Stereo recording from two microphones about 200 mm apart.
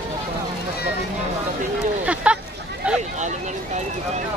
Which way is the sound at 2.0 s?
5° right (ahead or behind).